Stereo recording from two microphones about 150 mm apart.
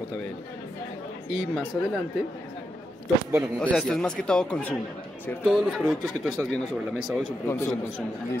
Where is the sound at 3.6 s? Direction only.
5° left (ahead or behind).